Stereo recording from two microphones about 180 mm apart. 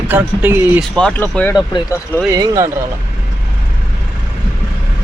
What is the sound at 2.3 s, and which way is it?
Speech, 20° right (ahead or behind).